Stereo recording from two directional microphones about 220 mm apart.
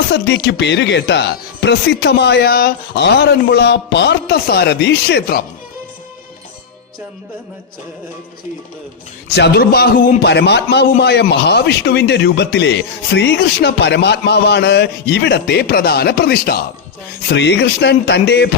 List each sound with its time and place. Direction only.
0.1 s a man's voice: 50° left (ahead or behind)
9.3 s a man's voice: 45° left (ahead or behind)